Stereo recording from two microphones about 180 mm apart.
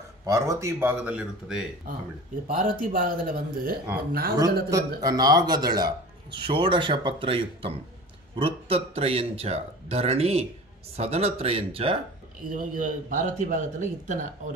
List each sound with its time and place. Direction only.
0.2 s speech: 15° right (ahead or behind)
2.4 s a man's voice: 50° right (ahead or behind)
4.6 s speech: 20° right (ahead or behind)
12.4 s a man's voice: 50° right (ahead or behind)